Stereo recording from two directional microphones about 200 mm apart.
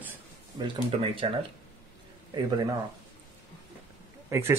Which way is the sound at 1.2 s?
30° right (ahead or behind).